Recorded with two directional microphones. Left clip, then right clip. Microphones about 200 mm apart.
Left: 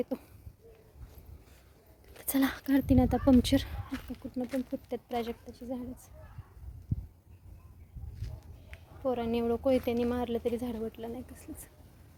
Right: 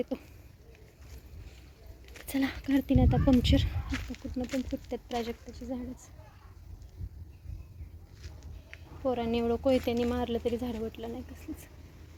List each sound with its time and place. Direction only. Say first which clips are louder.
0.1 s speech: even; 10° left (ahead or behind)
2.2 s speech: left 2 dB; 25° left (ahead or behind)
4.2 s speech: left 1 dB; 5° left (ahead or behind)
8.7 s speech: right 1 dB; centre (ahead or behind)